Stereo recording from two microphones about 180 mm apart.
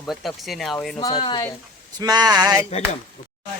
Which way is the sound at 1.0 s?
25° left (ahead or behind).